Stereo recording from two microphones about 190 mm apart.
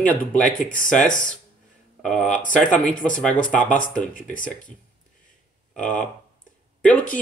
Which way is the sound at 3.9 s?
45° left (ahead or behind).